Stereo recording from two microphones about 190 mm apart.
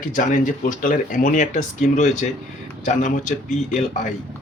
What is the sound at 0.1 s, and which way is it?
Speech, 45° left (ahead or behind).